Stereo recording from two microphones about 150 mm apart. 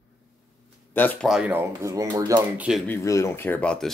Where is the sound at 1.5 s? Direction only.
20° right (ahead or behind).